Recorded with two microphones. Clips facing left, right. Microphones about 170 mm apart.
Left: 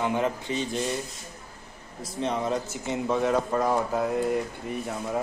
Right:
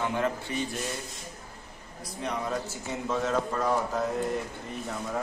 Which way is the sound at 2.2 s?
20° left (ahead or behind).